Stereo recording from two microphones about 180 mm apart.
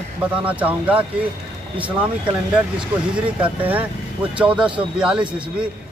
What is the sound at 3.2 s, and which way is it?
Speech, 5° right (ahead or behind).